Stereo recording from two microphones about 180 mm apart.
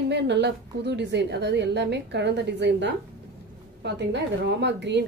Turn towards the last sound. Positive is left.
turn(degrees=-75)  # may be behind; listen again after turning